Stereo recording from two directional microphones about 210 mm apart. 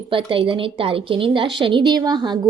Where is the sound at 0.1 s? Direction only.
25° right (ahead or behind).